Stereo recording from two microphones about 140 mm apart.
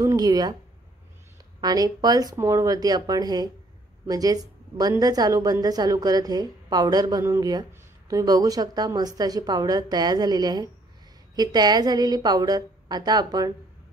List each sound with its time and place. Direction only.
0.0 s speech: 25° right (ahead or behind)
1.6 s a woman's voice: 25° right (ahead or behind)